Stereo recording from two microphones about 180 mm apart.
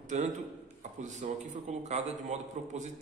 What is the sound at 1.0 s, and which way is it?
A man's voice, 40° right (ahead or behind).